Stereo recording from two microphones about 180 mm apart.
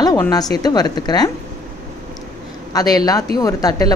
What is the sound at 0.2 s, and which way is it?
Speech, 20° left (ahead or behind).